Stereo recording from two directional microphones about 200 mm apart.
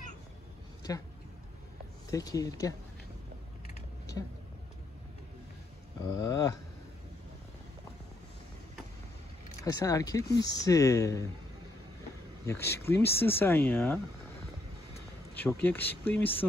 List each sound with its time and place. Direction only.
2.0 s speech: 15° left (ahead or behind)
4.2 s speech: 15° left (ahead or behind)
6.0 s speech: 20° left (ahead or behind)
9.6 s speech: 15° left (ahead or behind)
12.4 s speech: 15° left (ahead or behind)
15.3 s speech: 10° left (ahead or behind)